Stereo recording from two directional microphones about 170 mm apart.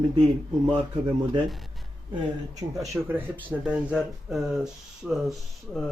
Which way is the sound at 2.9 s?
10° right (ahead or behind).